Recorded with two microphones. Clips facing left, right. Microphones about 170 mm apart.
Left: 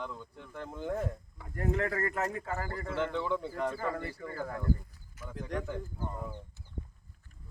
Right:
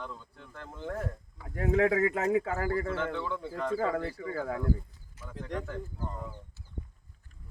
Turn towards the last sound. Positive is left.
turn(degrees=5)  # may be behind; listen again after turning